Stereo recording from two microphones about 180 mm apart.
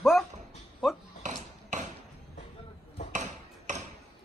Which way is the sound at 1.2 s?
40° right (ahead or behind).